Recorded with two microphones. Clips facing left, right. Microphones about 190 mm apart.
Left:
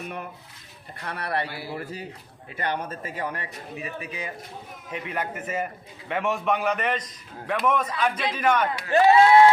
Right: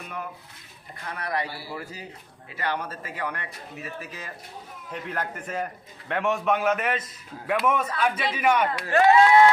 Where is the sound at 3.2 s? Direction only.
25° left (ahead or behind); by 8.7 s 10° right (ahead or behind).